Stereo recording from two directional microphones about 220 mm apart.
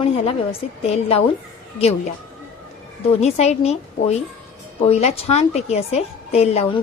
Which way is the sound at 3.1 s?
30° left (ahead or behind).